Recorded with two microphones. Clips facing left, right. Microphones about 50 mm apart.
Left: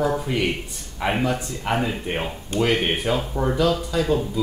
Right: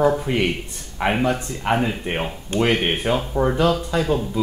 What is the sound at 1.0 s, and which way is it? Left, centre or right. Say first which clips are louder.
Speech: right 2 dB; right.